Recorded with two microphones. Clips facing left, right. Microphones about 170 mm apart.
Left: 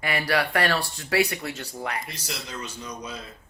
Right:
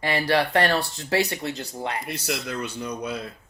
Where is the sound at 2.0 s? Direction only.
60° right (ahead or behind).